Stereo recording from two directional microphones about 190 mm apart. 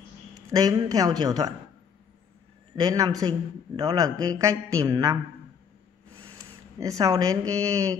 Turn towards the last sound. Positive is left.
turn(degrees=-15)  # may be behind; listen again after turning